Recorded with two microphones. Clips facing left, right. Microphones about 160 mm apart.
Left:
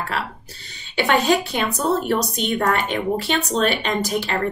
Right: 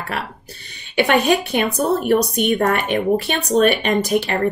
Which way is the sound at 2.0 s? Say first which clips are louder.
Right 5 dB; 60° right (ahead or behind).